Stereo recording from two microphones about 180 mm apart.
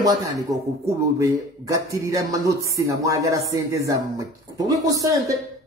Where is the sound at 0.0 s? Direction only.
20° right (ahead or behind).